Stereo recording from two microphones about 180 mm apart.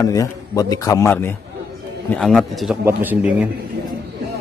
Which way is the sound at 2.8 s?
10° right (ahead or behind).